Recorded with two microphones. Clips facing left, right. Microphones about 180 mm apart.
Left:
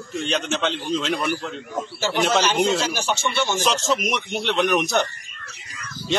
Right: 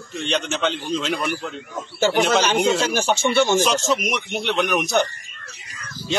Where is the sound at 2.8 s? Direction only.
50° right (ahead or behind).